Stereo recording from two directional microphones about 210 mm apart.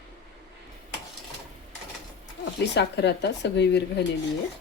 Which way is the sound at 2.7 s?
55° left (ahead or behind).